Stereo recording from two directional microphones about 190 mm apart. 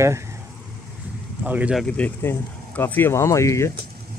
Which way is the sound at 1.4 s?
10° right (ahead or behind).